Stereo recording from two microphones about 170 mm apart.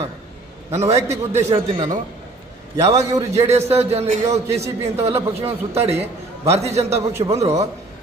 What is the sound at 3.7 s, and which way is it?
A man's voice, 40° right (ahead or behind).